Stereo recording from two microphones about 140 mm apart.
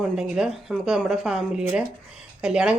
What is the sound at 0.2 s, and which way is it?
Speech, 5° right (ahead or behind).